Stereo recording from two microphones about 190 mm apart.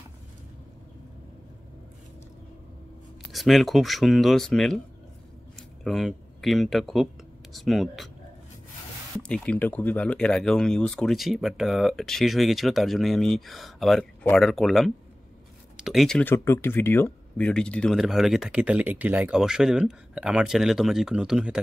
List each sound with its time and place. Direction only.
3.3 s speech: centre (ahead or behind)
9.3 s speech: 10° left (ahead or behind)